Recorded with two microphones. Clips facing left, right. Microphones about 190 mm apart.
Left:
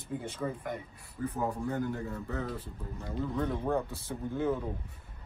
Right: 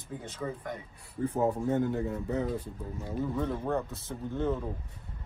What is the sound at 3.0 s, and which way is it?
Speech, 10° right (ahead or behind).